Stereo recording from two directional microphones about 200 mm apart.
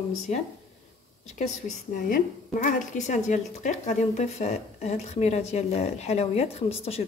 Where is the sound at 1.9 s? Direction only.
40° left (ahead or behind).